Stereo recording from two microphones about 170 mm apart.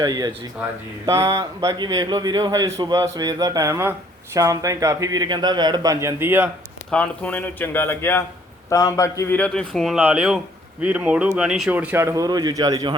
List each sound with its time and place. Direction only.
0.0 s a man's voice: 20° right (ahead or behind)
6.9 s a man's voice: 10° left (ahead or behind)
9.4 s speech: 5° left (ahead or behind); by 12.9 s 20° right (ahead or behind)